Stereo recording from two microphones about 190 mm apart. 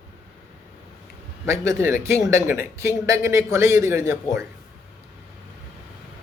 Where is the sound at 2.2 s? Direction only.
15° right (ahead or behind).